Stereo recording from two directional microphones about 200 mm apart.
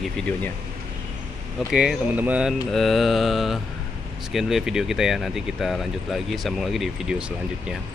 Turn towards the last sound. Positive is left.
turn(degrees=-5)  # may be behind; listen again after turning